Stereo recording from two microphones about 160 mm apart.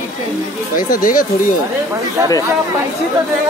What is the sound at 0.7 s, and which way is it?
Speech, 60° left (ahead or behind).